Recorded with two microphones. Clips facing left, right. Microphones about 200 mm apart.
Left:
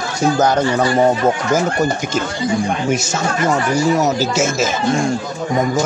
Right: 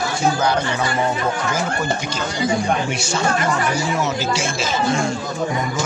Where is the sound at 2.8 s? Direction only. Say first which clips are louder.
Left 3 dB; 45° left (ahead or behind).